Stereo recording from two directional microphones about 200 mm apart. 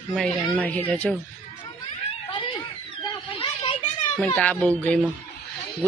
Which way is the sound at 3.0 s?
25° left (ahead or behind).